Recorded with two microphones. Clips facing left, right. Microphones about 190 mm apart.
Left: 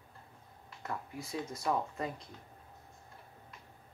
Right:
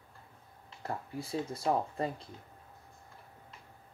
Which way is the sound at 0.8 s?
30° right (ahead or behind).